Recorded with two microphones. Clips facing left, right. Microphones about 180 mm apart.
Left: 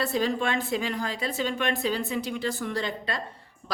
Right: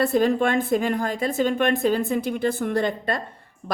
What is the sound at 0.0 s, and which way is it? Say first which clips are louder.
Speech: right 7 dB; 55° right (ahead or behind).